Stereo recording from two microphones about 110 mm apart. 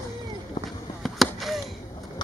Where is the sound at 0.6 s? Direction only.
40° left (ahead or behind).